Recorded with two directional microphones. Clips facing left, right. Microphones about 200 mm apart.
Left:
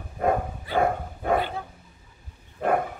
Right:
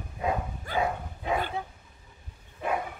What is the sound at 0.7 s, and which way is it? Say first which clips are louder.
Dog: left 5 dB; 55° left (ahead or behind).